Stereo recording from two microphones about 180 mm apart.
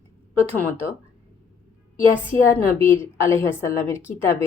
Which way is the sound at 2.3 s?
45° left (ahead or behind).